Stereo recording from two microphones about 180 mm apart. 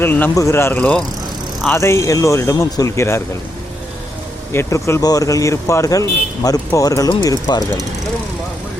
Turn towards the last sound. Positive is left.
turn(degrees=20)  # may be behind; listen again after turning